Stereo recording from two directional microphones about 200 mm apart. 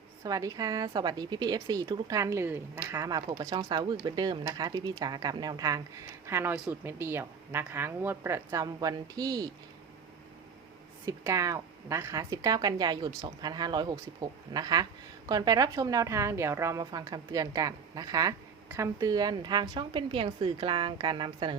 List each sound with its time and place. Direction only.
0.2 s a woman's voice: 15° right (ahead or behind)
11.0 s a woman's voice: 15° right (ahead or behind)